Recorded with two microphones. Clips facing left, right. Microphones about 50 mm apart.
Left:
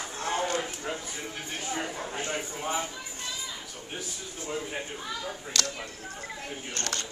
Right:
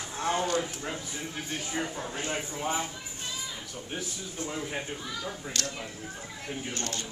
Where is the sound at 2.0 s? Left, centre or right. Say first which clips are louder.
Even; centre.